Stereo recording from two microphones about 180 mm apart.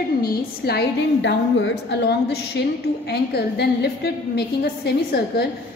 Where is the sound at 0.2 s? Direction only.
65° left (ahead or behind).